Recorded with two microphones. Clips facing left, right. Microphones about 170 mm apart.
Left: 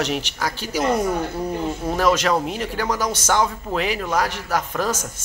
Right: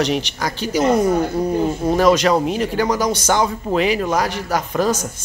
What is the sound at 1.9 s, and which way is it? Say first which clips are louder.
Speech: right 4 dB; centre (ahead or behind).